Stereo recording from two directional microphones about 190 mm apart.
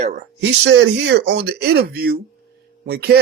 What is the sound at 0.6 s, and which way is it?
Speech, 70° right (ahead or behind).